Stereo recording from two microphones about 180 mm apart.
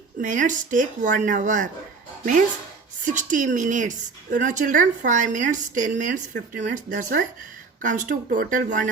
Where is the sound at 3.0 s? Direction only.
45° right (ahead or behind).